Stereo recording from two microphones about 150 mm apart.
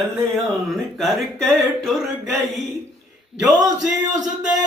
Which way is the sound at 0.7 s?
Centre (ahead or behind).